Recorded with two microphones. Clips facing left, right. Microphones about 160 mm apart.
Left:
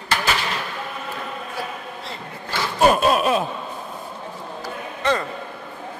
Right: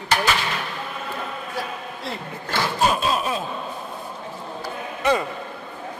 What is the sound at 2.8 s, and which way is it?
Speech, 55° left (ahead or behind).